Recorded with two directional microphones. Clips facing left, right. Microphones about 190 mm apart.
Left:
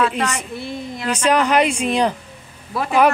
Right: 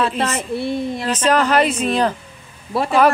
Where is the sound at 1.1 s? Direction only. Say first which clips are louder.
Even; 10° left (ahead or behind).